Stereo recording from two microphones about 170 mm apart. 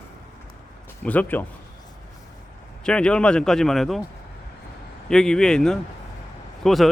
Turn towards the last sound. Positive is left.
turn(degrees=0)  # may be behind; listen again after turning